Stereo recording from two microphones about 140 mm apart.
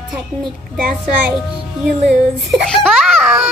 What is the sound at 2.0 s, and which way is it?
A child's voice, centre (ahead or behind).